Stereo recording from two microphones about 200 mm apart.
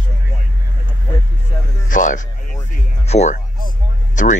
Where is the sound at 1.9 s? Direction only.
40° left (ahead or behind).